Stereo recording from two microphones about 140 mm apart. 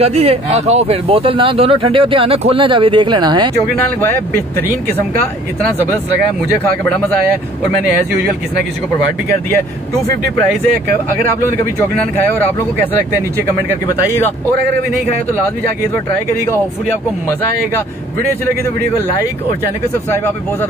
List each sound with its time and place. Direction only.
0.0 s speech: 45° right (ahead or behind)
6.9 s speech: 10° left (ahead or behind)